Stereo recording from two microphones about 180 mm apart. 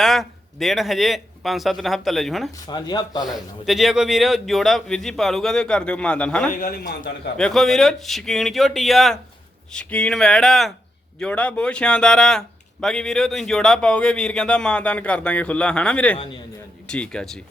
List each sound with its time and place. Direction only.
0.0 s speech: centre (ahead or behind)
2.6 s speech: 25° left (ahead or behind)
3.2 s speech: centre (ahead or behind)
6.5 s a man's voice: 50° left (ahead or behind)
7.3 s speech: 5° left (ahead or behind)